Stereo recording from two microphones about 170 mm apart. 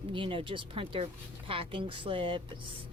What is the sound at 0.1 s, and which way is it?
Speech, 30° right (ahead or behind).